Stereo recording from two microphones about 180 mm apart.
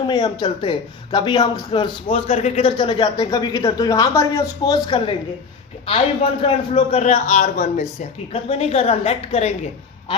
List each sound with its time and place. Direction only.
0.1 s speech: 25° left (ahead or behind)
6.4 s speech: 35° left (ahead or behind)